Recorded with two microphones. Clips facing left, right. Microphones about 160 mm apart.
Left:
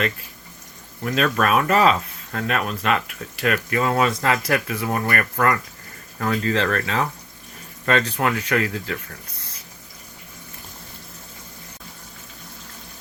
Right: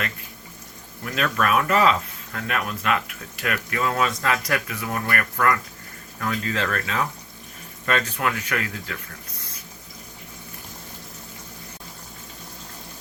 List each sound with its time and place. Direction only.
1.1 s speech: 25° left (ahead or behind)